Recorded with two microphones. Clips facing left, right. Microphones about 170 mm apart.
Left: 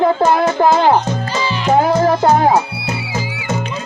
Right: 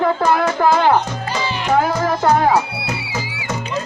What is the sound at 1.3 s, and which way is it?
Music, 55° right (ahead or behind).